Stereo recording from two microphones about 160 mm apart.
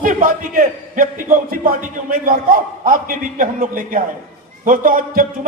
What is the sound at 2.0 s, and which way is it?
A man's voice, 60° right (ahead or behind).